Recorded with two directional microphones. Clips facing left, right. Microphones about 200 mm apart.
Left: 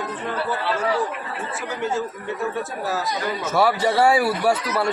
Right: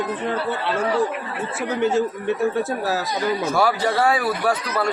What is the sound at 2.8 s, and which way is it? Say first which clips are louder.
Speech: right 2 dB; 65° right (ahead or behind).